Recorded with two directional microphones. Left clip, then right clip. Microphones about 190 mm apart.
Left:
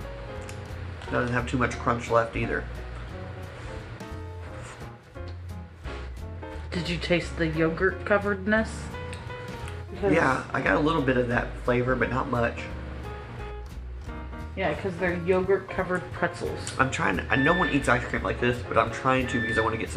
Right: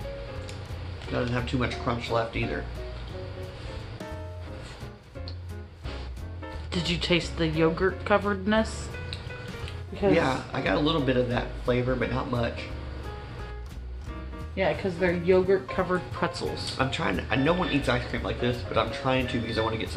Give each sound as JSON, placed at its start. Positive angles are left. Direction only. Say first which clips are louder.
{"t": 1.1, "sound": "speech", "louder": "left 2 dB", "side_deg": 0}
{"t": 6.9, "sound": "speech", "louder": "even", "side_deg": -10}
{"t": 10.1, "sound": "speech", "louder": "left 2 dB", "side_deg": -5}
{"t": 14.6, "sound": "speech", "louder": "right 2 dB", "side_deg": -20}
{"t": 16.2, "sound": "speech", "louder": "left 1 dB", "side_deg": -10}